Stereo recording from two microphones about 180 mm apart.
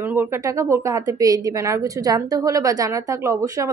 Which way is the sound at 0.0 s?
10° right (ahead or behind).